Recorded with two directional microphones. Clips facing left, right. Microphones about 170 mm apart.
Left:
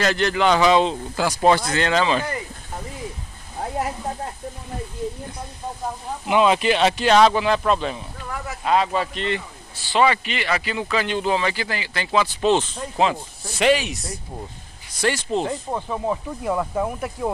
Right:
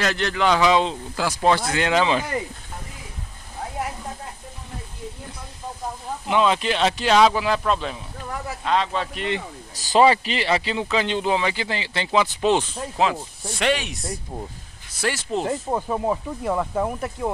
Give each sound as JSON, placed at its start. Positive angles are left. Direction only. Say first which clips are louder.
{"t": 0.0, "sound": "speech", "louder": "left 3 dB", "side_deg": 0}
{"t": 1.7, "sound": "speech", "louder": "even", "side_deg": -10}
{"t": 6.2, "sound": "speech", "louder": "left 3 dB", "side_deg": 10}
{"t": 9.1, "sound": "speech", "louder": "left 1 dB", "side_deg": -15}
{"t": 9.8, "sound": "speech", "louder": "right 3 dB", "side_deg": -40}
{"t": 12.9, "sound": "speech", "louder": "left 1 dB", "side_deg": 0}